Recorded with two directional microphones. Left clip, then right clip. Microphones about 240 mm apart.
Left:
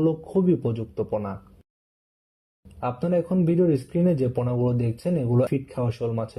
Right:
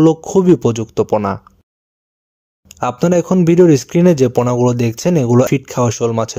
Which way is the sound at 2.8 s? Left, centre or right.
Right.